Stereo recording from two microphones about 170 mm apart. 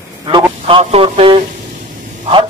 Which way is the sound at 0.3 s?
30° right (ahead or behind).